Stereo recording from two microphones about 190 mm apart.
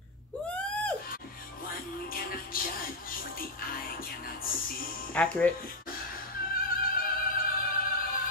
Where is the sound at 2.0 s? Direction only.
50° left (ahead or behind).